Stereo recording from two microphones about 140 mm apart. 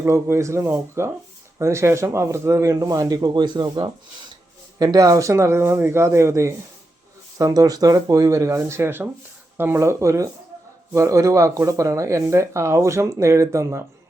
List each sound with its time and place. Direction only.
0.0 s speech: 20° right (ahead or behind)